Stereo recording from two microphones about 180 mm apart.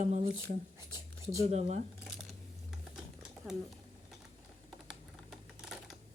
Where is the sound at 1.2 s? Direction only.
15° right (ahead or behind).